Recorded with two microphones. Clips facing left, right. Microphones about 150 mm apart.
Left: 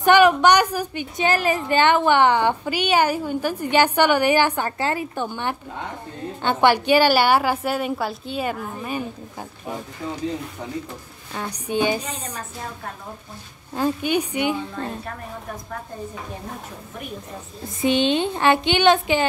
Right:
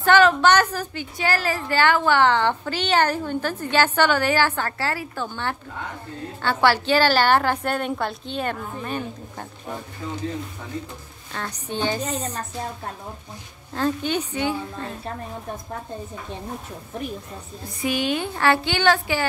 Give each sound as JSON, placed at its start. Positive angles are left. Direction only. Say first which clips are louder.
{"t": 0.0, "sound": "a woman's voice", "louder": "left 2 dB", "side_deg": 15}
{"t": 13.7, "sound": "a woman's voice", "louder": "left 2 dB", "side_deg": 10}
{"t": 17.8, "sound": "speech", "louder": "left 5 dB", "side_deg": 25}